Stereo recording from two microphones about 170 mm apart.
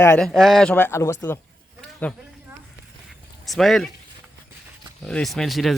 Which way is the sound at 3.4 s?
Centre (ahead or behind).